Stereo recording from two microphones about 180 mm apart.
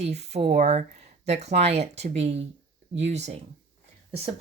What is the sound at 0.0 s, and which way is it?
Speech, 35° right (ahead or behind).